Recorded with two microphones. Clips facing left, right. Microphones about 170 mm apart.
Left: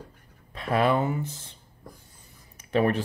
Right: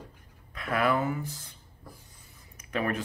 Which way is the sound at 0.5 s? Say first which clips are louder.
Left 4 dB; 30° left (ahead or behind).